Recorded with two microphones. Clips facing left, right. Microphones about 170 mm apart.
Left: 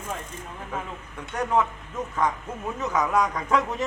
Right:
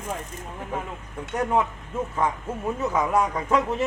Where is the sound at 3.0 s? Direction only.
25° right (ahead or behind).